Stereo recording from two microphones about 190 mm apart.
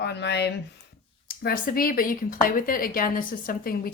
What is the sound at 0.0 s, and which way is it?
Speech, 60° left (ahead or behind).